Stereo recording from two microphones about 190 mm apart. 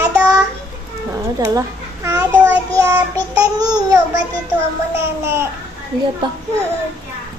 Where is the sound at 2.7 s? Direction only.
15° right (ahead or behind).